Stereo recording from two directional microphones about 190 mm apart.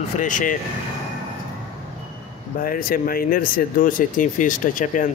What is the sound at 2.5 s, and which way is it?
Speech, 50° left (ahead or behind).